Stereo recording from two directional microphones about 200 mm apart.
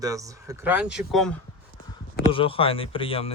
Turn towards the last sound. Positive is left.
turn(degrees=25)  # may be behind; listen again after turning